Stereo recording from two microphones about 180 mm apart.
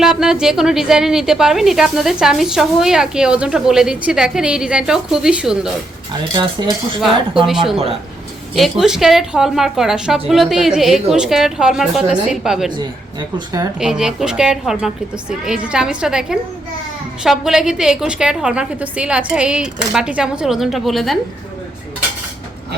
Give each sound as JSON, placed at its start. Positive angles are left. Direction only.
{"t": 0.0, "sound": "a woman's voice", "side_deg": -5}
{"t": 6.3, "sound": "speech", "side_deg": -25}
{"t": 7.4, "sound": "a woman's voice", "side_deg": 0}
{"t": 12.7, "sound": "speech", "side_deg": -25}
{"t": 13.7, "sound": "a woman's voice", "side_deg": -5}